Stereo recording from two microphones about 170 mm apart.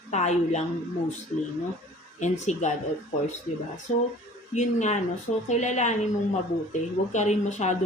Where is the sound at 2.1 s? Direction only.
45° left (ahead or behind).